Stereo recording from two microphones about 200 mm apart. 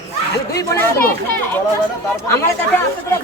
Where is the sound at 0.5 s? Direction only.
15° left (ahead or behind).